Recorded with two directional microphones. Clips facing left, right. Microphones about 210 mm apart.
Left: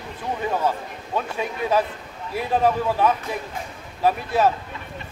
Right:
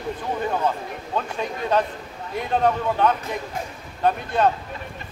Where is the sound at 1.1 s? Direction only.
5° left (ahead or behind).